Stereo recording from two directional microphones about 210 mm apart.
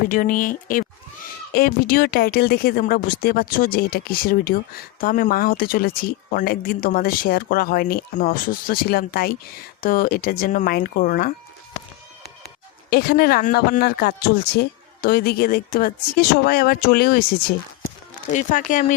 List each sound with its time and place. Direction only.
0.1 s speech: 40° left (ahead or behind)
12.9 s speech: 45° left (ahead or behind)